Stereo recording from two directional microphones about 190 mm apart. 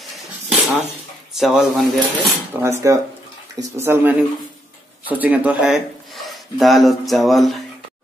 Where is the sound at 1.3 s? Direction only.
Centre (ahead or behind).